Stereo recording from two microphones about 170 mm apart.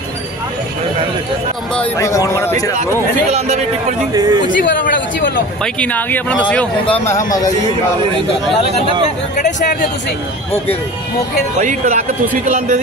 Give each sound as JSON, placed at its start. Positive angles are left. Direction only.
{"t": 2.0, "sound": "speech", "side_deg": 20}
{"t": 3.3, "sound": "speech", "side_deg": -40}
{"t": 4.1, "sound": "speech", "side_deg": -25}
{"t": 4.6, "sound": "speech", "side_deg": 55}
{"t": 5.6, "sound": "speech", "side_deg": 10}
{"t": 7.2, "sound": "a man's voice", "side_deg": 20}
{"t": 9.4, "sound": "speech", "side_deg": 50}
{"t": 11.6, "sound": "speech", "side_deg": -55}